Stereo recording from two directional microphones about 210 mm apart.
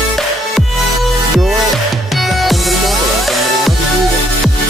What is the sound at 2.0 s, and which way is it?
Music, centre (ahead or behind).